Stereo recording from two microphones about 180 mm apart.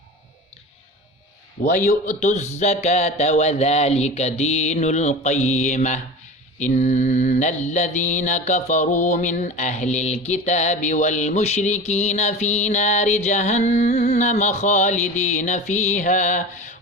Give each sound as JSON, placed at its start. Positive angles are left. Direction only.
{"t": 1.6, "sound": "mantra", "side_deg": 40}